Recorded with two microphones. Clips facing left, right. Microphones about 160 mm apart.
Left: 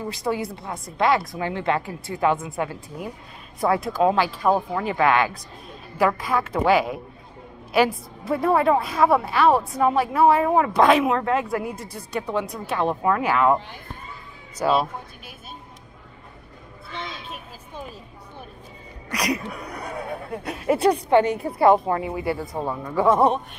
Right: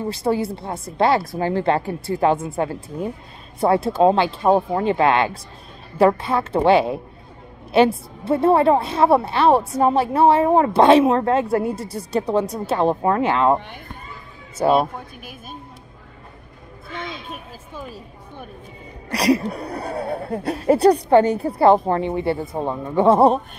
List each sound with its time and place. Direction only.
0.0 s speech: 30° right (ahead or behind)
14.7 s speech: 50° right (ahead or behind)
19.0 s speech: 30° right (ahead or behind)